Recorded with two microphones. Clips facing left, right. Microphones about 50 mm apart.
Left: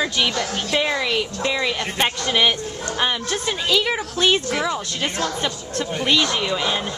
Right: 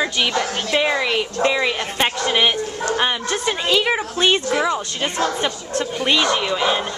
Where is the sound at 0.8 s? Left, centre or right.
Centre.